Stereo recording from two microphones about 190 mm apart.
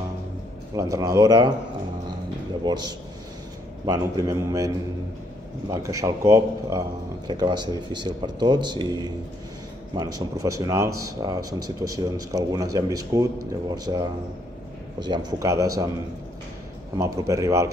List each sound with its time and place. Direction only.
0.7 s speech: 20° right (ahead or behind)
3.8 s speech: 20° right (ahead or behind)
16.9 s speech: 15° right (ahead or behind)